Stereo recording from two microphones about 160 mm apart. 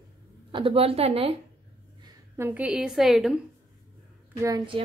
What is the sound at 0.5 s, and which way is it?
Speech, 35° right (ahead or behind).